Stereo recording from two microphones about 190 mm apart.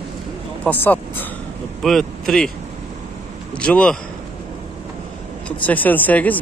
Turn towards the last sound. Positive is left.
turn(degrees=10)  # may be behind; listen again after turning